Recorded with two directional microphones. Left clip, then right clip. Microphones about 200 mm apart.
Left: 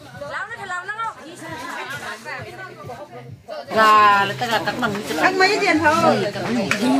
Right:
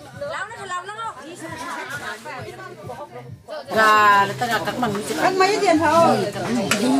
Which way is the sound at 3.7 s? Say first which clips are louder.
Left 1 dB; 20° right (ahead or behind).